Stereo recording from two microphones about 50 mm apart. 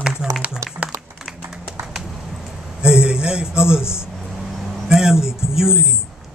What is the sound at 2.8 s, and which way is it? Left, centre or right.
A man's voice, centre.